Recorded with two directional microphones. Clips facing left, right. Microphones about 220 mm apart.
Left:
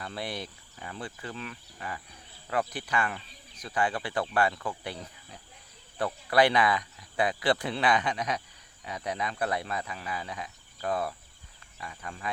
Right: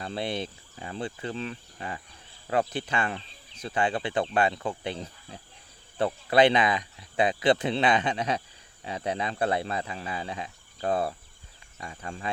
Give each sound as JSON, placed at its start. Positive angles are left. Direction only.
{"t": 0.0, "sound": "speech", "side_deg": -25}